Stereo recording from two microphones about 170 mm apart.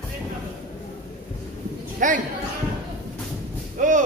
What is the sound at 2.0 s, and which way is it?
Speech, 50° right (ahead or behind).